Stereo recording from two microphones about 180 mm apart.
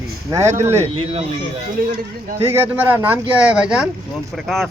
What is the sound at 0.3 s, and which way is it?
Speech, 15° right (ahead or behind).